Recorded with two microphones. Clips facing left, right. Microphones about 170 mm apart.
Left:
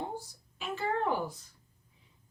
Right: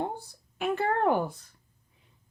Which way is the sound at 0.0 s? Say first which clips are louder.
Right 5 dB; 60° right (ahead or behind).